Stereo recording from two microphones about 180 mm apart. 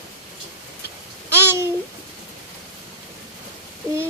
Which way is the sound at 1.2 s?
15° right (ahead or behind).